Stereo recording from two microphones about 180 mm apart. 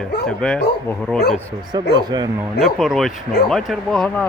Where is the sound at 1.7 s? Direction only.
20° right (ahead or behind).